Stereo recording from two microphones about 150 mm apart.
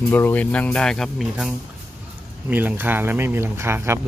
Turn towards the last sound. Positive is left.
turn(degrees=-15)  # may be behind; listen again after turning